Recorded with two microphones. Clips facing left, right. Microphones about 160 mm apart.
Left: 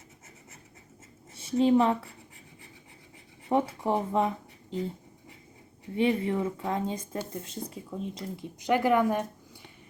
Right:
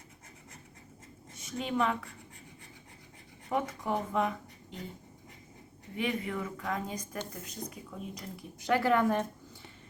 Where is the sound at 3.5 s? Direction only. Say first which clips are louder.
Left 6 dB; 30° left (ahead or behind).